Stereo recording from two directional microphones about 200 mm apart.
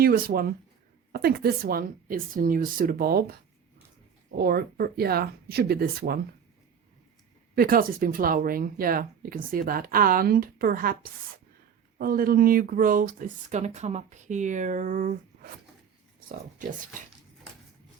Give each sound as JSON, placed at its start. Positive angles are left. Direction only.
{"t": 0.0, "sound": "speech", "side_deg": -50}
{"t": 4.4, "sound": "speech", "side_deg": -50}
{"t": 7.5, "sound": "speech", "side_deg": -45}